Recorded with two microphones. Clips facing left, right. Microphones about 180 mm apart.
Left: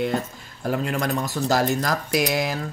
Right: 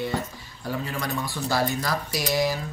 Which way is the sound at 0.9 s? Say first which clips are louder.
Left 5 dB; 50° left (ahead or behind).